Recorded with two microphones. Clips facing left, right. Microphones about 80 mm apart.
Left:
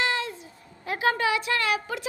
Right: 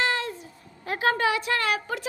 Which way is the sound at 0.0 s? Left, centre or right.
Right.